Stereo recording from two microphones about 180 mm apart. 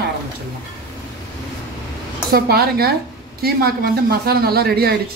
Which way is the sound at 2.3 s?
60° right (ahead or behind).